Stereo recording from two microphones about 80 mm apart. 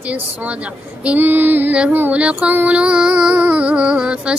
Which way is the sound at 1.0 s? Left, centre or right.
Right.